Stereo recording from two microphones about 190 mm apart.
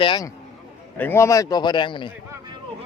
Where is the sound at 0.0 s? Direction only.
25° left (ahead or behind).